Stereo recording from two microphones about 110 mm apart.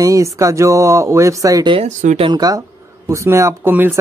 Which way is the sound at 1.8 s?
80° right.